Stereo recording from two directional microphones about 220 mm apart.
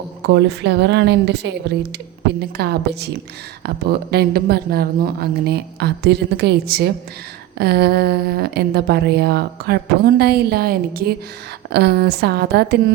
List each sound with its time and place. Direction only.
0.3 s a woman's voice: 50° right (ahead or behind)
4.1 s a woman's voice: 45° right (ahead or behind)